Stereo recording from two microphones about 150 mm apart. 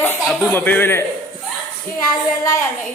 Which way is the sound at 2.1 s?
20° left (ahead or behind).